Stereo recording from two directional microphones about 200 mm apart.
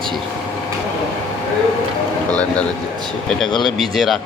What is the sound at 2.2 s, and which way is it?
A man's voice, 5° left (ahead or behind).